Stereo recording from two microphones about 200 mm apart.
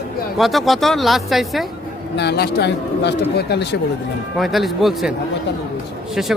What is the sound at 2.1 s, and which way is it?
A man's voice, 55° left (ahead or behind).